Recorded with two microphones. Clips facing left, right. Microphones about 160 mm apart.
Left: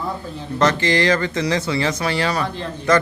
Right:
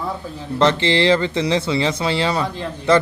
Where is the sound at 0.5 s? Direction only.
25° right (ahead or behind).